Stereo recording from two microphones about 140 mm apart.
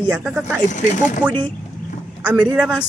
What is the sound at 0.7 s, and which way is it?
Speech, 60° left (ahead or behind).